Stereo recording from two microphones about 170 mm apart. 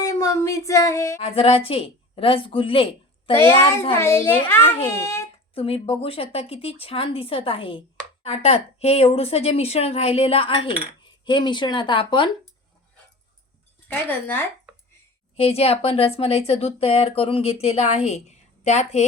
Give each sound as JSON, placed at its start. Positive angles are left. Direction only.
{"t": 0.0, "sound": "a sound", "side_deg": 15}
{"t": 1.2, "sound": "a woman's voice", "side_deg": 35}
{"t": 3.3, "sound": "a child's voice", "side_deg": 15}
{"t": 5.5, "sound": "speech", "side_deg": 35}
{"t": 13.8, "sound": "a child's voice", "side_deg": 10}
{"t": 15.4, "sound": "speech", "side_deg": 35}